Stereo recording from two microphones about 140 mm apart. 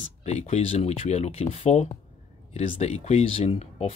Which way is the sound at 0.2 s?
50° left (ahead or behind).